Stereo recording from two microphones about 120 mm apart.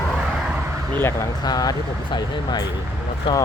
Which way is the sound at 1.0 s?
20° left (ahead or behind).